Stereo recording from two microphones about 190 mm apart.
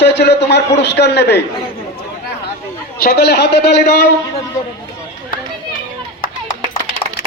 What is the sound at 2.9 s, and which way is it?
Speech, 55° left (ahead or behind).